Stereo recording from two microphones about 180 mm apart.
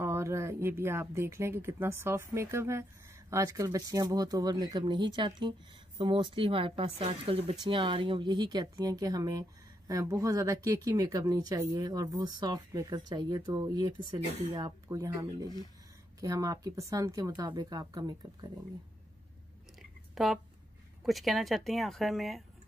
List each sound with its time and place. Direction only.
0.0 s speech: 15° right (ahead or behind)
20.2 s a woman's voice: centre (ahead or behind)